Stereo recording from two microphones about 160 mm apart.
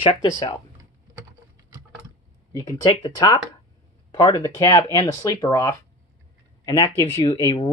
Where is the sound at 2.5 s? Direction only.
25° left (ahead or behind).